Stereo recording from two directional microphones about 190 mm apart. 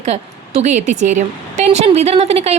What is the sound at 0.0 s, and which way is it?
Speech, 35° right (ahead or behind).